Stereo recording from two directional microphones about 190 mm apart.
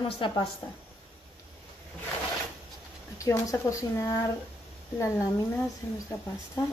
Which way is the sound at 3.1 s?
15° left (ahead or behind).